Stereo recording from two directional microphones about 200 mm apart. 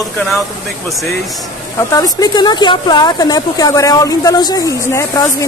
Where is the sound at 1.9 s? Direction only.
20° left (ahead or behind).